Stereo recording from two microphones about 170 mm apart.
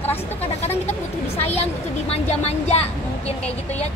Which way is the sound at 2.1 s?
40° left (ahead or behind).